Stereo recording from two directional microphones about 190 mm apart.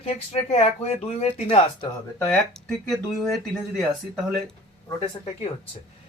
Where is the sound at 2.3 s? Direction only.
Centre (ahead or behind).